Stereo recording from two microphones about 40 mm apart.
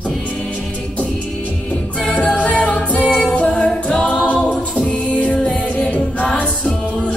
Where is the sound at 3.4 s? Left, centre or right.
Left.